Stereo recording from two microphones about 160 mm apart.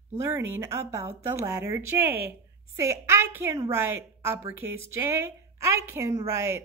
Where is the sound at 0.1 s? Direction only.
15° right (ahead or behind).